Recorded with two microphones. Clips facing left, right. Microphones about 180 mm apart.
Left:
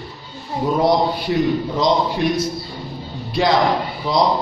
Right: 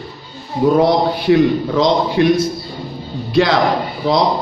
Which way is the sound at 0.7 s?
75° right (ahead or behind).